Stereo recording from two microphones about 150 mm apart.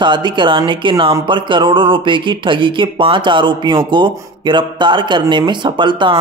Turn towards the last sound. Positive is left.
turn(degrees=-35)  # may be behind; listen again after turning